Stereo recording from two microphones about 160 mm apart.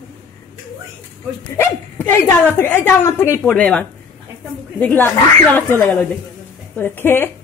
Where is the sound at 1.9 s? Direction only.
15° left (ahead or behind).